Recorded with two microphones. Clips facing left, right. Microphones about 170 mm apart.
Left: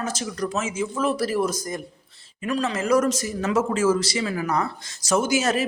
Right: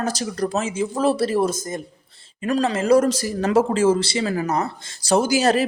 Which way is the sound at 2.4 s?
40° right (ahead or behind).